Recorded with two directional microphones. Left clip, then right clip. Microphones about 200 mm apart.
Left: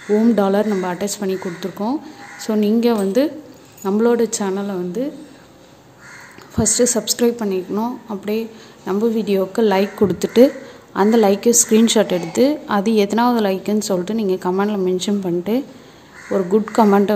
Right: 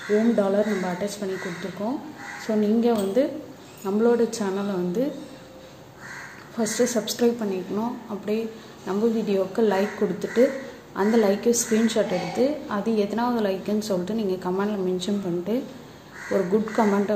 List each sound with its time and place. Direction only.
0.4 s a woman's voice: 40° left (ahead or behind)
2.4 s a woman's voice: 40° left (ahead or behind); by 5.1 s 20° left (ahead or behind)
6.5 s a woman's voice: 35° left (ahead or behind)